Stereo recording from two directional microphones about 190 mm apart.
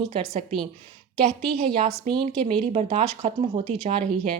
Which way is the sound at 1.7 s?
30° right (ahead or behind).